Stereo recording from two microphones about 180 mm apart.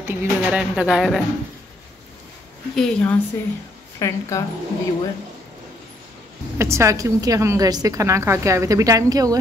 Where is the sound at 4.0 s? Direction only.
15° left (ahead or behind).